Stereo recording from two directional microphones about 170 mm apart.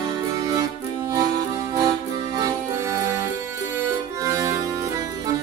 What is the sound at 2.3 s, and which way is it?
Music, 20° right (ahead or behind).